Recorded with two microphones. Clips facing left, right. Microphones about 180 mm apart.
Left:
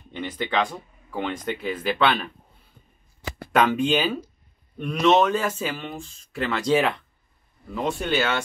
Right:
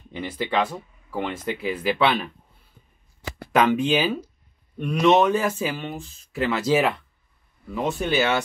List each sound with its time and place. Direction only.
0.1 s speech: 5° right (ahead or behind)
3.5 s speech: centre (ahead or behind)